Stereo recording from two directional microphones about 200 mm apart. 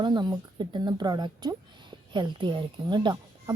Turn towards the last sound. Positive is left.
turn(degrees=-20)  # may be behind; listen again after turning